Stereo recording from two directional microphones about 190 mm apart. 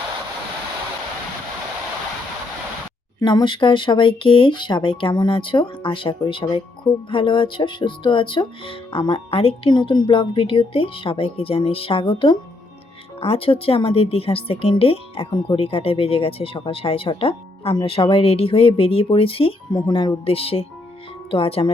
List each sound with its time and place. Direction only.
3.2 s speech: 25° left (ahead or behind)